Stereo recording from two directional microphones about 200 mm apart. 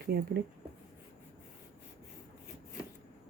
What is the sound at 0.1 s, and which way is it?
Speech, 55° right (ahead or behind).